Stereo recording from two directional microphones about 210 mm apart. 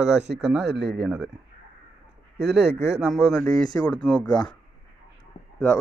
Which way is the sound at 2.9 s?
5° right (ahead or behind).